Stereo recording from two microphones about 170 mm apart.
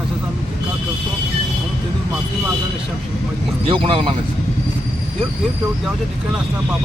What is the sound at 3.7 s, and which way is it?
Speech, 30° right (ahead or behind).